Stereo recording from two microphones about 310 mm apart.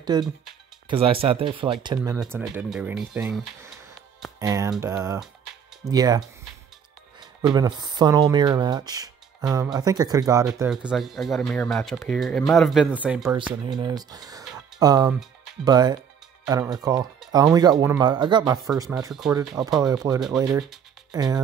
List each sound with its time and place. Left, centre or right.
0.0 s speech: centre
2.0 s speech: centre